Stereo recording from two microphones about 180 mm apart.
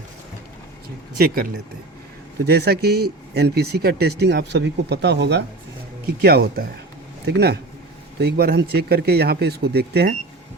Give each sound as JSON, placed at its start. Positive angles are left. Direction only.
{"t": 2.4, "sound": "speech", "side_deg": -65}
{"t": 6.2, "sound": "speech", "side_deg": -60}